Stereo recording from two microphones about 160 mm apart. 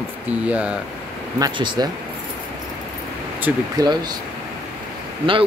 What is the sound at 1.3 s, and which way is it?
Speech, 25° right (ahead or behind).